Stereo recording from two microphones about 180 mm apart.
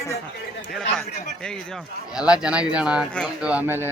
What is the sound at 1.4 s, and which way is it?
Speech, 5° left (ahead or behind).